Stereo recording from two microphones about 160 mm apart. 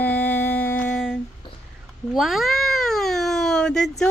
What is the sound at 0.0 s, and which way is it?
Humming, 10° left (ahead or behind).